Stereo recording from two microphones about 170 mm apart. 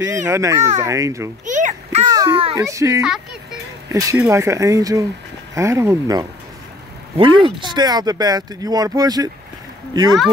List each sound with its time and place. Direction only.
0.1 s speech: 20° right (ahead or behind)
1.4 s children playing: 45° right (ahead or behind)
2.0 s a sound: 20° right (ahead or behind)
2.5 s speech: 20° right (ahead or behind)